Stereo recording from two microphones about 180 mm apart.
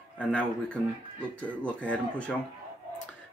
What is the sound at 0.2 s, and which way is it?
Speech, 5° left (ahead or behind).